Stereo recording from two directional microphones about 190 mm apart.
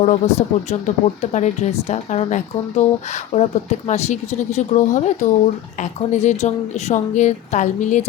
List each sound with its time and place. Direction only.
0.0 s speech: 35° left (ahead or behind)